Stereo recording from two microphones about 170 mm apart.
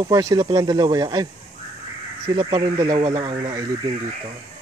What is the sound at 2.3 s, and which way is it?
Speech, 30° right (ahead or behind).